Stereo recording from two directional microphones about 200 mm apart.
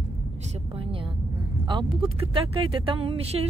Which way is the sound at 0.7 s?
25° right (ahead or behind).